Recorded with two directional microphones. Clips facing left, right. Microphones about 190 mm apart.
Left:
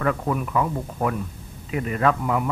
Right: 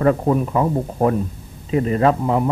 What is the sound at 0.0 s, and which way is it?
Speech, 30° right (ahead or behind).